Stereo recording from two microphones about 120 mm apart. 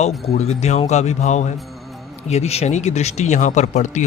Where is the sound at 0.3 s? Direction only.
65° left (ahead or behind).